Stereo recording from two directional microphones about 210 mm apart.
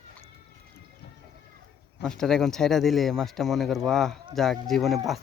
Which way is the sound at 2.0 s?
Centre (ahead or behind).